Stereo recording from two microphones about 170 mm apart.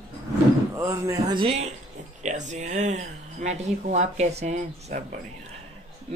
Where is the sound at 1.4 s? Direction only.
40° right (ahead or behind).